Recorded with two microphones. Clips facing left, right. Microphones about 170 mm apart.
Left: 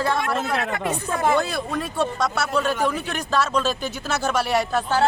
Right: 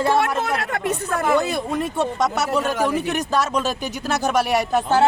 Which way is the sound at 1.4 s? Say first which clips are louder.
Right 3 dB; 20° right (ahead or behind).